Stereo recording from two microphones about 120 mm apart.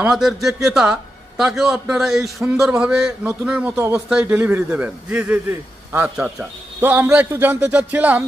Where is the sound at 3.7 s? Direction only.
20° right (ahead or behind).